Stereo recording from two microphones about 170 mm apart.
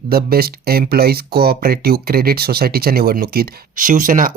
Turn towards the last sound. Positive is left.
turn(degrees=-55)  # may be behind; listen again after turning